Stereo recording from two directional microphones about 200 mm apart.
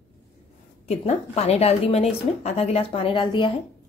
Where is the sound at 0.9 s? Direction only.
35° left (ahead or behind).